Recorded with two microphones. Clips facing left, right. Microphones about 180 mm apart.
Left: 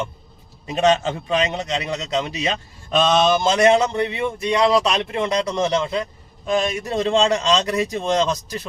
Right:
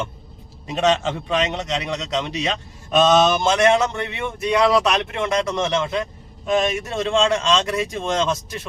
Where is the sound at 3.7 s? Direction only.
35° left (ahead or behind).